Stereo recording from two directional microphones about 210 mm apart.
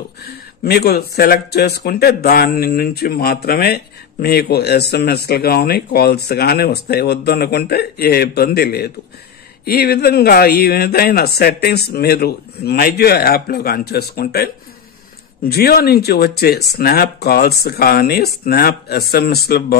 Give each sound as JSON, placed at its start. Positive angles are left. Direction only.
{"t": 0.2, "sound": "speech", "side_deg": 50}